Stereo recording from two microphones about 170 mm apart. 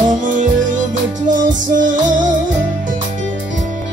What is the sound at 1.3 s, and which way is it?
Music, 50° right (ahead or behind).